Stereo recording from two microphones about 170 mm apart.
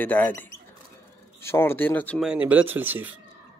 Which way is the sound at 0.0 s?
10° left (ahead or behind).